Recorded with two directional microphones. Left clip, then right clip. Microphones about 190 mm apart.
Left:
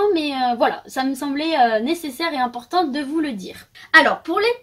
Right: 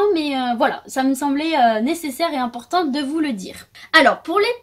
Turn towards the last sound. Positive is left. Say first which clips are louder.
# right 1 dB
turn(degrees=-50)  # may be behind; listen again after turning